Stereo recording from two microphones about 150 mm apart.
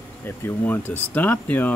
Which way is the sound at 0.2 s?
15° left (ahead or behind).